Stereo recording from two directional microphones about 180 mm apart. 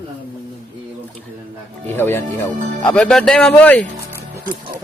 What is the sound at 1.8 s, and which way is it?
Speech, 10° left (ahead or behind).